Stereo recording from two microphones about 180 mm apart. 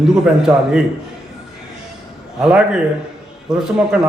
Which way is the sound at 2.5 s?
5° right (ahead or behind).